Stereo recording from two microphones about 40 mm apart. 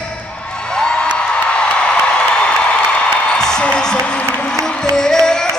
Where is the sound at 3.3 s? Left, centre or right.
Centre.